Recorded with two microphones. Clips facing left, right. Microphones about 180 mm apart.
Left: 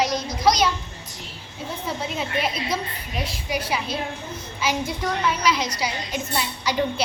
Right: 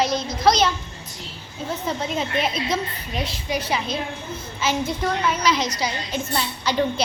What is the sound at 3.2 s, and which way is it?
A woman's voice, 10° left (ahead or behind).